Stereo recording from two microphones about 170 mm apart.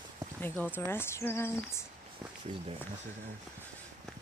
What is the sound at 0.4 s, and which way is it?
Speech, 10° left (ahead or behind).